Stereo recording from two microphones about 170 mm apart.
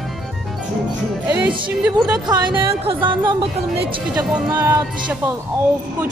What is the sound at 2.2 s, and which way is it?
Speech, 25° right (ahead or behind).